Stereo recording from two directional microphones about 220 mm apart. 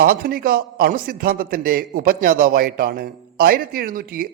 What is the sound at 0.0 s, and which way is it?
A man's voice, 45° right (ahead or behind).